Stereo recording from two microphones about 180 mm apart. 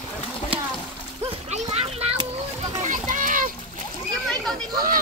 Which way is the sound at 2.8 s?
45° right (ahead or behind).